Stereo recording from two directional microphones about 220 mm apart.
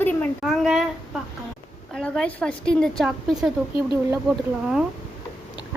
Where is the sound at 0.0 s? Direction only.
5° left (ahead or behind).